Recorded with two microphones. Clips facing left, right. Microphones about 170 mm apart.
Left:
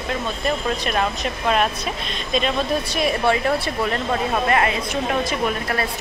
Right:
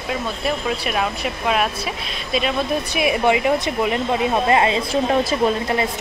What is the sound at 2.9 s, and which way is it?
A woman's voice, 15° right (ahead or behind).